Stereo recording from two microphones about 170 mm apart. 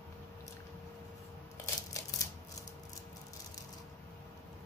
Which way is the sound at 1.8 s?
20° left (ahead or behind).